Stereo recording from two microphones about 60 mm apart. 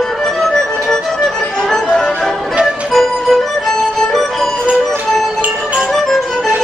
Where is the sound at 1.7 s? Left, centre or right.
Centre.